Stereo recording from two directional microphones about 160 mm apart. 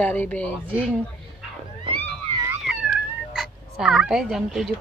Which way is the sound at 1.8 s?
35° right (ahead or behind).